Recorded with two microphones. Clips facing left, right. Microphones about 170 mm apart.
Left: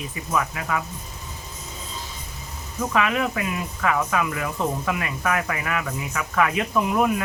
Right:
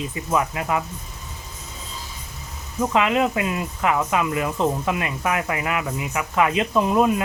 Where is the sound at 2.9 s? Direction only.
20° right (ahead or behind).